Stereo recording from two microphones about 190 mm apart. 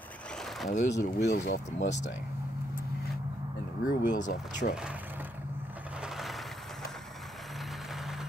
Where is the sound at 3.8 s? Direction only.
40° left (ahead or behind).